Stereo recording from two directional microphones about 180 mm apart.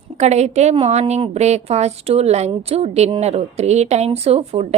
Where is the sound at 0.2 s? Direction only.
40° right (ahead or behind).